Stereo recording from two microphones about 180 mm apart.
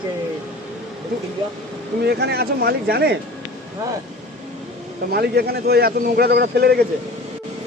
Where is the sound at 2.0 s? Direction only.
65° right (ahead or behind).